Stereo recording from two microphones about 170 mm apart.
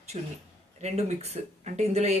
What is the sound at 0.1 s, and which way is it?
Speech, 40° right (ahead or behind).